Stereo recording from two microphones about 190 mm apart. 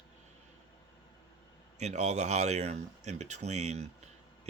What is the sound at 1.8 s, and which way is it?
Speech, 35° right (ahead or behind).